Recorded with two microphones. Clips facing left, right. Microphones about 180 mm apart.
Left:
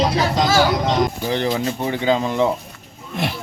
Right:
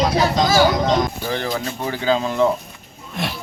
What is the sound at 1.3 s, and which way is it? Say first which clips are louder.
Speech: left 3 dB; 20° left (ahead or behind).